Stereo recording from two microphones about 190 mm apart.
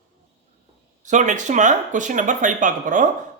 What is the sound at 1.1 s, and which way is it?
Speech, 40° right (ahead or behind).